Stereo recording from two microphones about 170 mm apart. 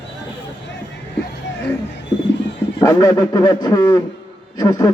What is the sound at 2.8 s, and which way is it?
Speech, 20° left (ahead or behind).